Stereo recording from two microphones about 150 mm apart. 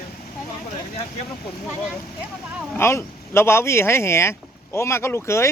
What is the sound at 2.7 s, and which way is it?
Speech, 15° left (ahead or behind).